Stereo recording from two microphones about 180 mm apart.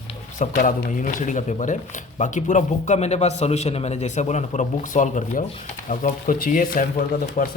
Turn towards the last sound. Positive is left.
turn(degrees=55)  # may be behind; listen again after turning